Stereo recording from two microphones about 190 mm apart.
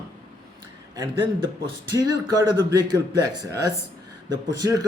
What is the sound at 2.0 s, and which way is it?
Speech, 20° right (ahead or behind).